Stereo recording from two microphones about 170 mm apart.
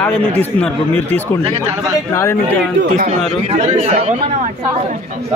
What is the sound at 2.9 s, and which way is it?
Speech, 40° right (ahead or behind).